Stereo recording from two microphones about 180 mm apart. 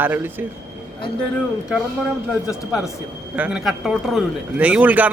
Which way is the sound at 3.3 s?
5° right (ahead or behind).